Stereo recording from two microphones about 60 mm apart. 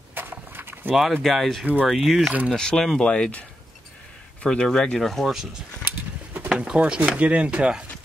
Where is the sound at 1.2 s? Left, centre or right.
Centre.